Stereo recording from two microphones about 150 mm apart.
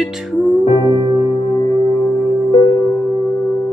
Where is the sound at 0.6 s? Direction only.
35° left (ahead or behind).